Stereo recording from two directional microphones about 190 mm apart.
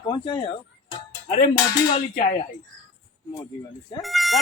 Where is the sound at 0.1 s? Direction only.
25° left (ahead or behind).